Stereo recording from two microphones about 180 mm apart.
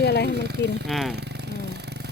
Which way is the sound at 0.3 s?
65° right (ahead or behind).